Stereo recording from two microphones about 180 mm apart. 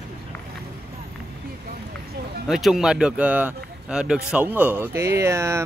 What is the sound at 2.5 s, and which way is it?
Speech, centre (ahead or behind).